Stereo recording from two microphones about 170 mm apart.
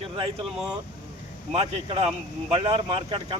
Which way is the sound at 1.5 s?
40° right (ahead or behind).